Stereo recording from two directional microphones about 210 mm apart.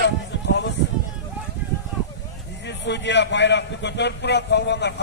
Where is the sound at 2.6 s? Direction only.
55° left (ahead or behind).